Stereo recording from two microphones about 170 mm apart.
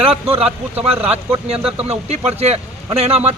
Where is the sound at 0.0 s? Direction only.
35° right (ahead or behind).